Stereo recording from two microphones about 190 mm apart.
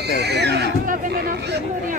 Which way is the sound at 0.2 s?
60° right (ahead or behind).